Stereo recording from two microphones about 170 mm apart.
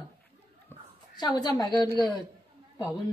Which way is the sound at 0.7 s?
15° left (ahead or behind).